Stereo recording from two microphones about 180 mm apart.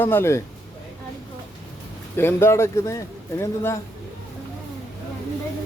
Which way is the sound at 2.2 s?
15° left (ahead or behind).